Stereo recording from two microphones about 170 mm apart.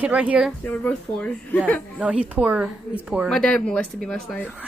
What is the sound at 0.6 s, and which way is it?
Speech, 10° left (ahead or behind).